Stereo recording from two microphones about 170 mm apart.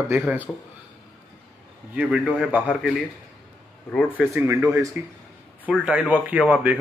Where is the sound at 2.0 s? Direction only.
5° right (ahead or behind).